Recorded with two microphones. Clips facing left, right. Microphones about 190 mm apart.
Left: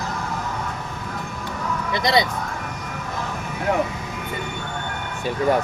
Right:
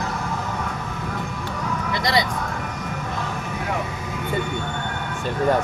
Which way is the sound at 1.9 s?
20° left (ahead or behind).